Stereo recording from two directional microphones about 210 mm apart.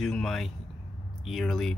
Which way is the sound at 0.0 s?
Centre (ahead or behind).